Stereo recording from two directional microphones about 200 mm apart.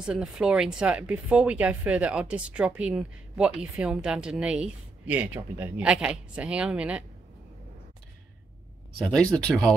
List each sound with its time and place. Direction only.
0.0 s speech: 5° right (ahead or behind)
9.0 s speech: 5° left (ahead or behind)